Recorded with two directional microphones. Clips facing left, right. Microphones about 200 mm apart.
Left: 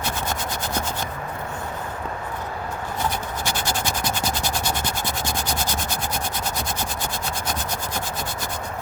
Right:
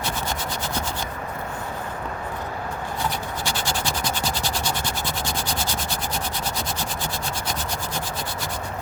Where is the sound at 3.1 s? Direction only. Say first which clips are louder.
Left 1 dB; 50° left (ahead or behind).